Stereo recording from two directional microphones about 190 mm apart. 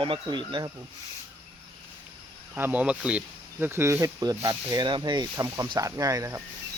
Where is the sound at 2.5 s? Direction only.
10° right (ahead or behind).